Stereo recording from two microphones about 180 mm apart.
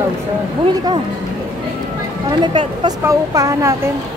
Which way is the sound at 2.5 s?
30° right (ahead or behind).